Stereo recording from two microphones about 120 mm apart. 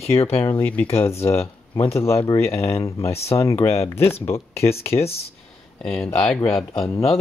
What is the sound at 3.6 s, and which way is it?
Speech, 20° left (ahead or behind).